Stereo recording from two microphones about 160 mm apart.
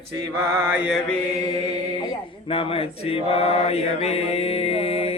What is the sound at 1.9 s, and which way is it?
Male singing, 35° left (ahead or behind).